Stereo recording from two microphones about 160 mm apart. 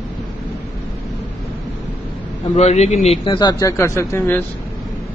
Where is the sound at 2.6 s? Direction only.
45° left (ahead or behind); by 4.4 s 15° left (ahead or behind).